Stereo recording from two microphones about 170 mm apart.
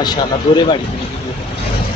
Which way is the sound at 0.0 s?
25° left (ahead or behind).